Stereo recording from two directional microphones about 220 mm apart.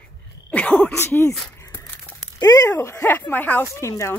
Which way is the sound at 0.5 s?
5° left (ahead or behind).